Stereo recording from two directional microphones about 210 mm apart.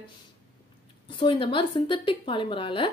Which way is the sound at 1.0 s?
25° left (ahead or behind).